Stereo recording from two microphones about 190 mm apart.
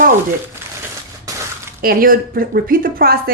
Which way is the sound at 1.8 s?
50° right (ahead or behind).